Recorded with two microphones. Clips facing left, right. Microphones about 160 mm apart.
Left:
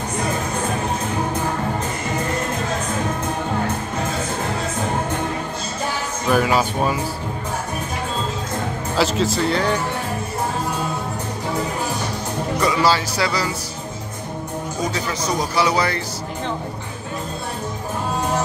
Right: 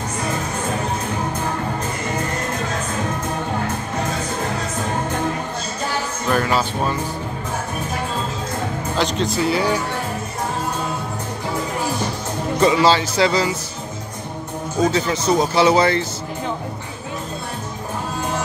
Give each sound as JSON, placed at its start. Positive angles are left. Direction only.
{"t": 6.2, "sound": "speech", "side_deg": 10}
{"t": 8.9, "sound": "speech", "side_deg": 5}
{"t": 12.5, "sound": "speech", "side_deg": -25}
{"t": 14.9, "sound": "speech", "side_deg": -25}